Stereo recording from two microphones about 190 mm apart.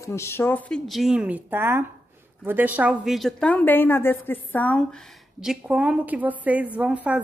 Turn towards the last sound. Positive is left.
turn(degrees=-5)  # may be behind; listen again after turning